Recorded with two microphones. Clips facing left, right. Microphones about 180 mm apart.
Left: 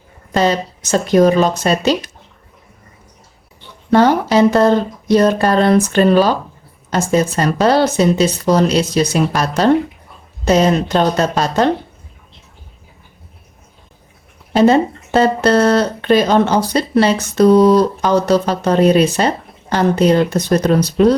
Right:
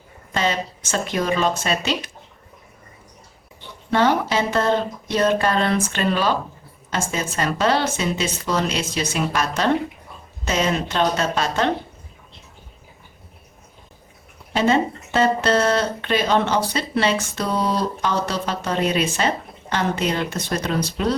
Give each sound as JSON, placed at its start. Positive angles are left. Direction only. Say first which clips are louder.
{"t": 0.3, "sound": "speech", "louder": "left 8 dB", "side_deg": 40}
{"t": 3.9, "sound": "speech", "louder": "left 7 dB", "side_deg": 40}
{"t": 14.5, "sound": "speech", "louder": "left 8 dB", "side_deg": 40}